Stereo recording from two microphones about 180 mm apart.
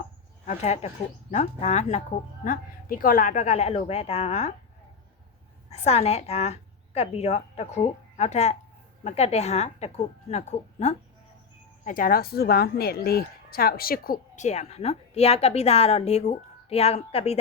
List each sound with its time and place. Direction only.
0.4 s a woman's voice: 40° left (ahead or behind)
2.4 s a woman's voice: 50° left (ahead or behind)
5.7 s a woman's voice: 35° left (ahead or behind)
11.9 s a woman's voice: 50° left (ahead or behind); by 17.4 s 35° left (ahead or behind)